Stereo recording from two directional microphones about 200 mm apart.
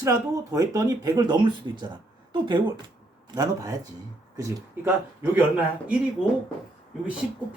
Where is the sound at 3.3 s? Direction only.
20° right (ahead or behind).